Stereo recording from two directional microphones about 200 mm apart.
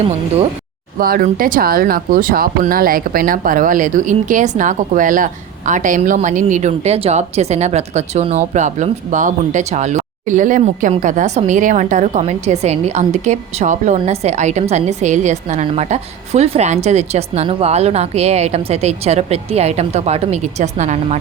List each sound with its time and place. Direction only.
0.9 s a woman's voice: 45° right (ahead or behind)